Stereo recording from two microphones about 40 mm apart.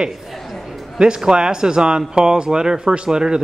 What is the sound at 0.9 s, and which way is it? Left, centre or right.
Speech, centre.